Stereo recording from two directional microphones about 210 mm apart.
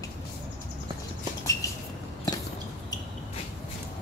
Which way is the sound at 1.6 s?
15° left (ahead or behind).